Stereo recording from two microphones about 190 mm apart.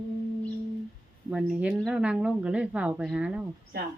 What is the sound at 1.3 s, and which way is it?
Speech, 5° right (ahead or behind).